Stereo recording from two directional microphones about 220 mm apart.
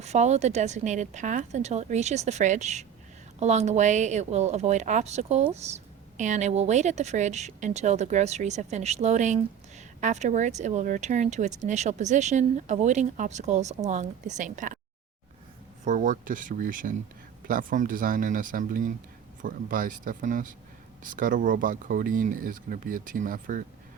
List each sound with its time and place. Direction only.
0.0 s speech: 30° right (ahead or behind)
15.8 s speech: 35° right (ahead or behind)